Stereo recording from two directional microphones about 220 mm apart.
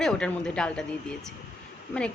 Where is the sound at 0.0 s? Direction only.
5° left (ahead or behind).